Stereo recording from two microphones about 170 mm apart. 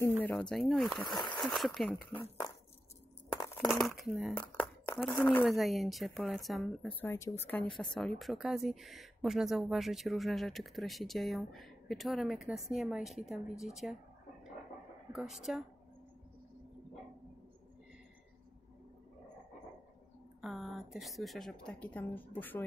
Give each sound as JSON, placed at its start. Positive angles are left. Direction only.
{"t": 0.2, "sound": "speech", "side_deg": 10}
{"t": 3.6, "sound": "speech", "side_deg": 0}
{"t": 5.4, "sound": "speech", "side_deg": 0}
{"t": 15.1, "sound": "speech", "side_deg": 0}
{"t": 20.4, "sound": "speech", "side_deg": 0}